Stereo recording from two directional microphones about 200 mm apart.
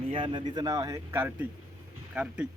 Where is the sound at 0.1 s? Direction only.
25° right (ahead or behind).